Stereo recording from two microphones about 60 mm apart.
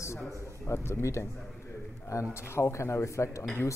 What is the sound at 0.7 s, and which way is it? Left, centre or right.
Speech, left.